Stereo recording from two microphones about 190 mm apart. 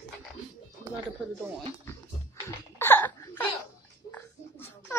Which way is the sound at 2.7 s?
10° left (ahead or behind).